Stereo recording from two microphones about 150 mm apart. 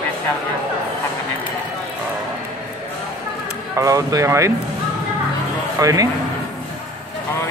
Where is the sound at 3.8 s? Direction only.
20° right (ahead or behind).